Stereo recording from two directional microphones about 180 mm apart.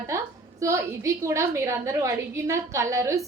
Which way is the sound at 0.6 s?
15° right (ahead or behind).